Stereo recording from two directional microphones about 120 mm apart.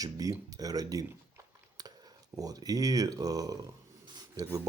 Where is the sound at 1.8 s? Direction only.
35° right (ahead or behind).